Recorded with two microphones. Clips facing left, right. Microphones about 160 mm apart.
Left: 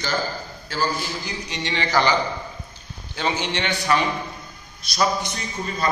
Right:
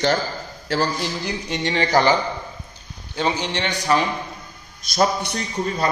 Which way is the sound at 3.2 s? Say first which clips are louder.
Right 2 dB; 35° right (ahead or behind).